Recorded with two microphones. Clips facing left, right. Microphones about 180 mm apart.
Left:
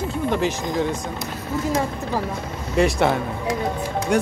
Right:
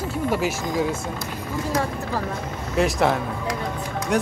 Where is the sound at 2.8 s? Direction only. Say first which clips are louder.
Left 2 dB; centre (ahead or behind).